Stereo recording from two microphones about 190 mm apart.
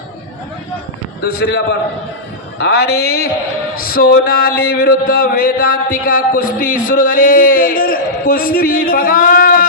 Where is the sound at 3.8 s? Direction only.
50° left (ahead or behind).